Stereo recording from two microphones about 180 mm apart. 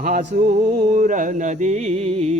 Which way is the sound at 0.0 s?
50° right (ahead or behind).